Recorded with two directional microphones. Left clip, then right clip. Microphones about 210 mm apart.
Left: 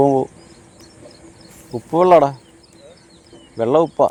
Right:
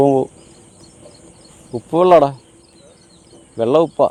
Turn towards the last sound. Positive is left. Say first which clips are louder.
# right 1 dB
turn(degrees=-10)  # may be behind; listen again after turning